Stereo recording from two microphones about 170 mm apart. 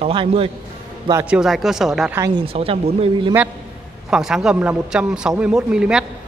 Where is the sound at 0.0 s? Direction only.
35° right (ahead or behind).